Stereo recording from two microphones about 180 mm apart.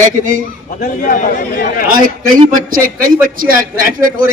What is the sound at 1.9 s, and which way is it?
A man's voice, 50° right (ahead or behind).